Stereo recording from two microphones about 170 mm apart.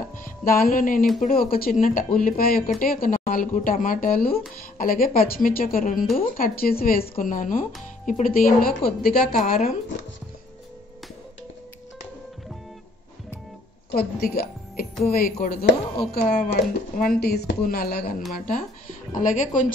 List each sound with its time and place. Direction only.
0.2 s music: 55° left (ahead or behind)
1.2 s speech: 60° left (ahead or behind)
9.4 s speech: 45° left (ahead or behind)
13.8 s a woman's voice: 65° left (ahead or behind)
18.3 s speech: 55° left (ahead or behind)